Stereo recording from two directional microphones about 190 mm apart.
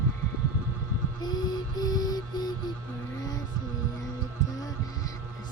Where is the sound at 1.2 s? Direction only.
20° left (ahead or behind).